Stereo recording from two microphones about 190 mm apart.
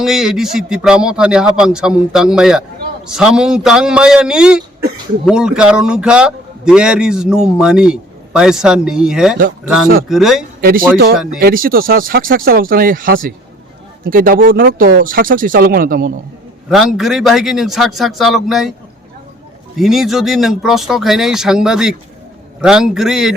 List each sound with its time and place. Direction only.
0.0 s a man's voice: centre (ahead or behind)
10.6 s speech: 50° right (ahead or behind)
16.6 s a man's voice: centre (ahead or behind)
19.8 s a man's voice: centre (ahead or behind)